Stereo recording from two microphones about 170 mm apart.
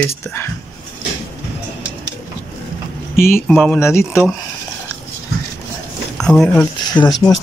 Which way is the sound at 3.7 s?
15° left (ahead or behind).